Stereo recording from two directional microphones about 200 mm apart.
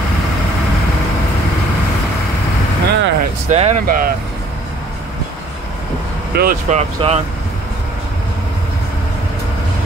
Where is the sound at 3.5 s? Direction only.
35° right (ahead or behind).